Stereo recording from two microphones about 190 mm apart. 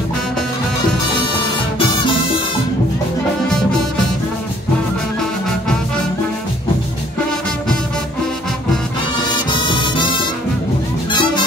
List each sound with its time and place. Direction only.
9.3 s music: 25° left (ahead or behind)
11.1 s music: 25° left (ahead or behind)